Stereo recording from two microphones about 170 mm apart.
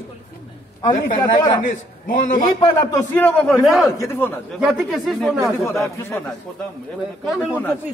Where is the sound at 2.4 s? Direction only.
25° left (ahead or behind).